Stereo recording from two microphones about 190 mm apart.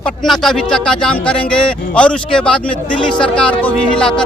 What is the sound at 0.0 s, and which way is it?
Speech, centre (ahead or behind).